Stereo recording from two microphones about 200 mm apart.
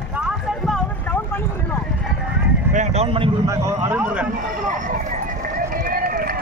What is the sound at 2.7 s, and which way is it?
Speech, 35° right (ahead or behind).